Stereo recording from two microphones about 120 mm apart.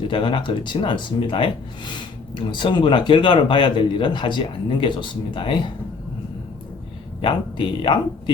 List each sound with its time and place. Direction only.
0.1 s speech: 45° left (ahead or behind)
7.2 s speech: 45° left (ahead or behind)